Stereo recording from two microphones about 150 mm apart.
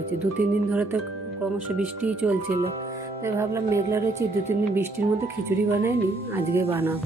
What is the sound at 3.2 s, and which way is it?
Music, 15° right (ahead or behind).